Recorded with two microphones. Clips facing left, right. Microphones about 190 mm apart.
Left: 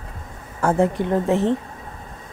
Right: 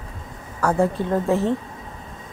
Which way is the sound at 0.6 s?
20° left (ahead or behind).